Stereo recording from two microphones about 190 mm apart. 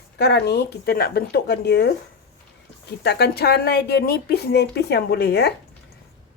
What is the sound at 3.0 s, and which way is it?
Speech, 60° left (ahead or behind).